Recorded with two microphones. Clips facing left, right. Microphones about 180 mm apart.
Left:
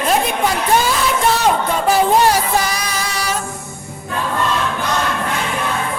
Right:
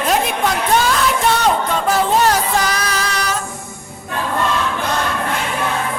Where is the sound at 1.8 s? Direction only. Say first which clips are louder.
Left 2 dB; 10° left (ahead or behind).